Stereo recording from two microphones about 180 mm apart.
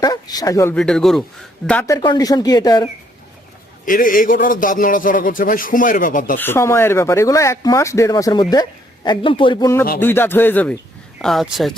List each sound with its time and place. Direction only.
0.0 s speech: 20° left (ahead or behind)
0.8 s speech: 5° left (ahead or behind)
1.9 s speech: 25° left (ahead or behind)
3.8 s a man's voice: 50° left (ahead or behind)
6.3 s speech: 10° left (ahead or behind)